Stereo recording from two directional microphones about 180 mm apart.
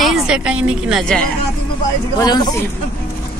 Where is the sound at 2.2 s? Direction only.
20° left (ahead or behind).